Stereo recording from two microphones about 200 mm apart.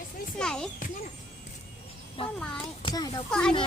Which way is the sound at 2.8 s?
20° left (ahead or behind).